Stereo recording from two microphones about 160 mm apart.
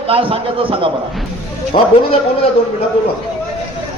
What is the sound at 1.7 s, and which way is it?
Speech, 40° left (ahead or behind).